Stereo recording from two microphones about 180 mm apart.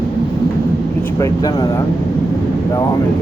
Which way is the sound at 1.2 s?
20° left (ahead or behind).